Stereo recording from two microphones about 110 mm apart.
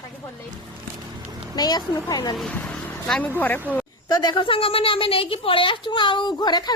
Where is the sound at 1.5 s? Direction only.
40° left (ahead or behind).